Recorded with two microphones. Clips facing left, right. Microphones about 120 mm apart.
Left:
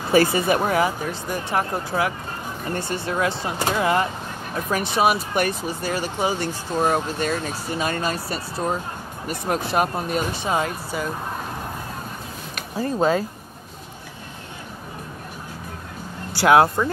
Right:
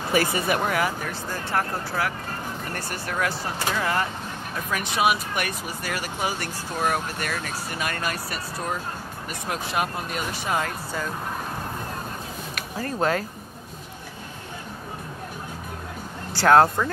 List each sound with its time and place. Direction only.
0.1 s speech: 30° left (ahead or behind)
4.6 s speech: 35° left (ahead or behind)
9.3 s speech: 40° left (ahead or behind)
10.3 s speech: 25° left (ahead or behind)
12.8 s speech: 15° left (ahead or behind)
16.3 s speech: 10° left (ahead or behind)